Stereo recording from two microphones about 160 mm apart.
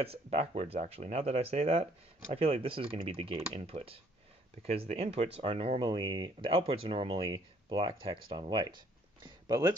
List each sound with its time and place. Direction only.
0.0 s speech: 40° right (ahead or behind)